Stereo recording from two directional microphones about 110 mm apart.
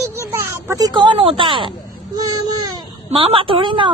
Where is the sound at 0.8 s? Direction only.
40° right (ahead or behind).